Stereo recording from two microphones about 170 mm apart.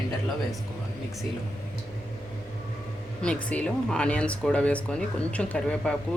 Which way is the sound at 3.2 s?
5° left (ahead or behind).